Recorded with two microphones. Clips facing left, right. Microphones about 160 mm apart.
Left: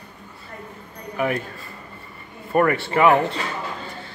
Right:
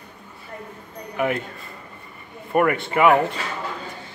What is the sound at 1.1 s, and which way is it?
Speech, 20° right (ahead or behind).